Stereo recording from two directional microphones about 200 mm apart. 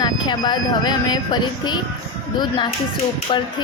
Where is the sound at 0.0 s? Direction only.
20° left (ahead or behind).